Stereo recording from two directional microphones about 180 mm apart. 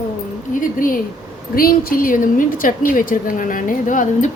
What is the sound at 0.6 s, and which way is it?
A woman's voice, 50° left (ahead or behind).